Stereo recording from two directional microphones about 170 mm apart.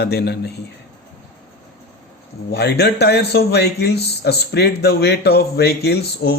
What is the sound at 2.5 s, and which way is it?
Speech, 75° left (ahead or behind).